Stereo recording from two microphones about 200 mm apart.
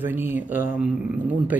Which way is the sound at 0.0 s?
10° right (ahead or behind).